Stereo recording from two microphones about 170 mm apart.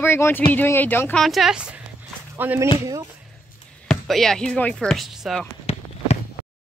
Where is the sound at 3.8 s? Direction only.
Centre (ahead or behind).